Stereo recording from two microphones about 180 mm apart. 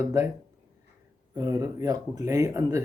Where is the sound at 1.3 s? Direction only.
20° right (ahead or behind).